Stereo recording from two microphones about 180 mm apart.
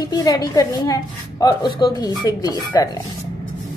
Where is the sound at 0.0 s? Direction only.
20° left (ahead or behind).